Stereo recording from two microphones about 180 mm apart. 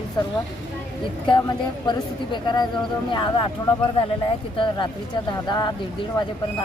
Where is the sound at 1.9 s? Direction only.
25° left (ahead or behind).